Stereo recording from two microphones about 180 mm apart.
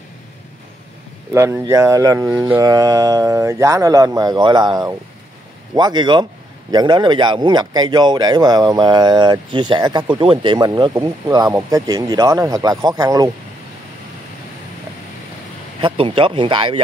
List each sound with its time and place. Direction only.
1.3 s speech: 15° right (ahead or behind)
15.8 s speech: 30° right (ahead or behind)